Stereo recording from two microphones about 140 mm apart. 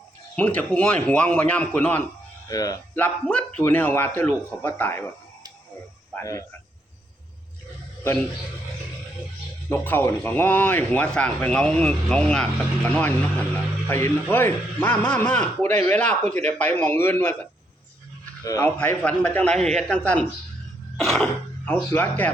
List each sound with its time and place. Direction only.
0.3 s speech: 10° left (ahead or behind)
2.5 s a man's voice: 25° left (ahead or behind)
2.9 s speech: 10° left (ahead or behind)
6.1 s a man's voice: 20° left (ahead or behind)
9.6 s speech: 15° left (ahead or behind)
18.4 s a man's voice: 25° left (ahead or behind)
18.8 s speech: 10° left (ahead or behind)
21.0 s throat clearing: 5° left (ahead or behind)
21.7 s speech: 15° left (ahead or behind)